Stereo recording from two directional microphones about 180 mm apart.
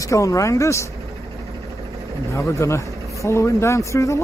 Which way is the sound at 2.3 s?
15° left (ahead or behind).